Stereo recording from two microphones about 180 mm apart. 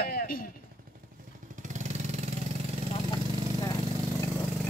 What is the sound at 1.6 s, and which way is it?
Vehicle, 40° right (ahead or behind).